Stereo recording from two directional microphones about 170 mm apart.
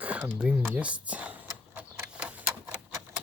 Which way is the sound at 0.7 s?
5° right (ahead or behind).